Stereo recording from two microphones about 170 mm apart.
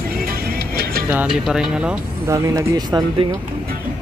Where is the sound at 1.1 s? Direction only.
5° right (ahead or behind).